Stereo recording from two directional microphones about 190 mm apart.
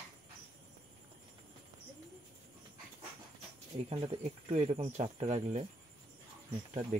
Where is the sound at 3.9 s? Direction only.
30° right (ahead or behind).